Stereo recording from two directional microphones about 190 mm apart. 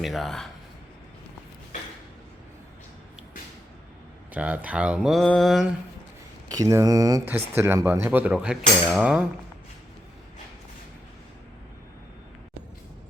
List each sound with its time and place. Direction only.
0.0 s speech: centre (ahead or behind)
4.4 s speech: 5° right (ahead or behind)
6.5 s speech: 15° right (ahead or behind)